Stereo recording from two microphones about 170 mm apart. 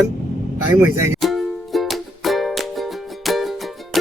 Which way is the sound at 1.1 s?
Centre (ahead or behind).